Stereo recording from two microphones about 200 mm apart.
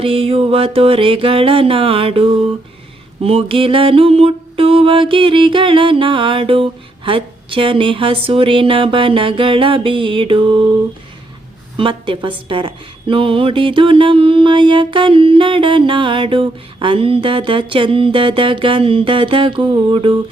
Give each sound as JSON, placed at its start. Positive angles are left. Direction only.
{"t": 0.0, "sound": "a woman's voice", "side_deg": -25}
{"t": 11.8, "sound": "a woman's voice", "side_deg": -25}